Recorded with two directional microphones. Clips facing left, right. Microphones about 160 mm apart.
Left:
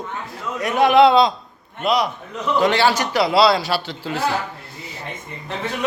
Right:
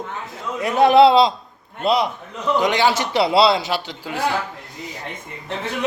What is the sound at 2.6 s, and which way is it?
A man's voice, 15° right (ahead or behind).